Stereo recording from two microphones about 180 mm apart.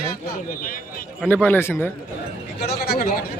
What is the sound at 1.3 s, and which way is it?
Speech, 10° left (ahead or behind).